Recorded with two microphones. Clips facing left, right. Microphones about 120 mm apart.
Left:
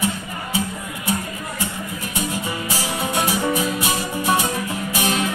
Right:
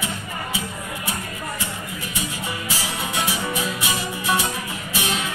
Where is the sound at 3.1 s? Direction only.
45° left (ahead or behind).